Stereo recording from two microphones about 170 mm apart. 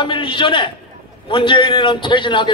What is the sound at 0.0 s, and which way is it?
Speech, 30° left (ahead or behind).